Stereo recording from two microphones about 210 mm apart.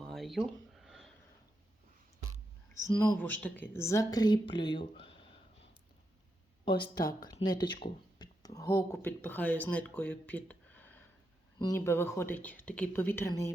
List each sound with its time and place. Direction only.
0.1 s a sound: centre (ahead or behind)
2.7 s speech: 15° left (ahead or behind)
6.7 s speech: 20° left (ahead or behind)